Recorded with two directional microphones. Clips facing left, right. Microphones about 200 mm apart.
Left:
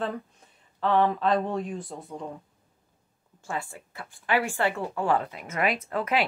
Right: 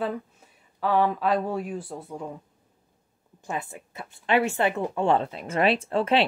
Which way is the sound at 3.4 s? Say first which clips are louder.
Right 1 dB; 20° right (ahead or behind).